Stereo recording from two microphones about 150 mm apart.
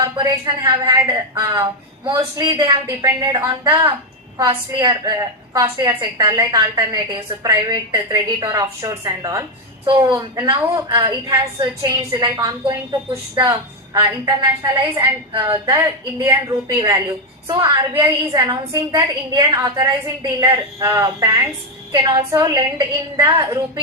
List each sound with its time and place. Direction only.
0.0 s a woman's voice: 25° right (ahead or behind)